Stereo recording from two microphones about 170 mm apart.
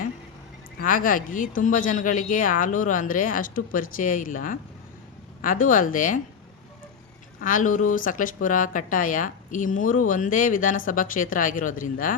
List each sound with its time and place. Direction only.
0.8 s speech: 55° left (ahead or behind)
7.4 s speech: 50° left (ahead or behind)